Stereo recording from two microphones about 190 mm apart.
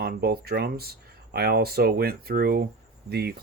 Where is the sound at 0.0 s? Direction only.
55° right (ahead or behind).